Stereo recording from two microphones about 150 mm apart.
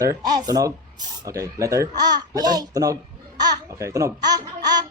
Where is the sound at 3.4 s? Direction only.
25° right (ahead or behind).